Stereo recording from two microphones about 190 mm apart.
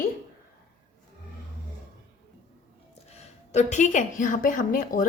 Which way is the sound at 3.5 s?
35° left (ahead or behind).